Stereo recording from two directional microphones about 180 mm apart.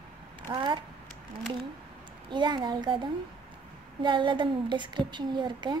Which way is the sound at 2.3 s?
25° right (ahead or behind).